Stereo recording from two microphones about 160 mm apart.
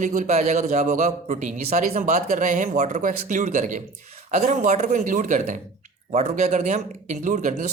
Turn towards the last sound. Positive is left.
turn(degrees=-50)  # may be behind; listen again after turning